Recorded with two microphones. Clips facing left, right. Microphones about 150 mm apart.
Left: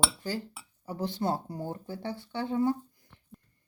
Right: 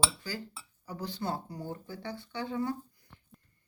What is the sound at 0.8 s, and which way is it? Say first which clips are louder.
Speech: left 5 dB; 35° left (ahead or behind).